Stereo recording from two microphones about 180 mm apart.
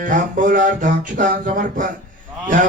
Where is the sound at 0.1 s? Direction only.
45° right (ahead or behind).